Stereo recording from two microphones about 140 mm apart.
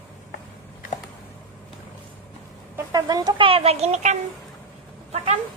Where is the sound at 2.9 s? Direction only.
30° right (ahead or behind); by 4.1 s 55° right (ahead or behind).